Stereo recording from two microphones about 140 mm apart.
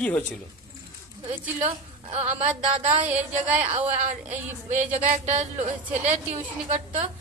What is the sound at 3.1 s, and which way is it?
Speech, 55° right (ahead or behind).